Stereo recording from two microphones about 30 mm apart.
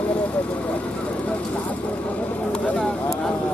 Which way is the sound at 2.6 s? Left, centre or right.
Left.